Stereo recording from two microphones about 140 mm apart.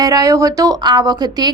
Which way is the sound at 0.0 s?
25° right (ahead or behind).